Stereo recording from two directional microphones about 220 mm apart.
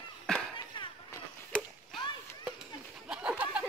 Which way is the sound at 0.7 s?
20° left (ahead or behind).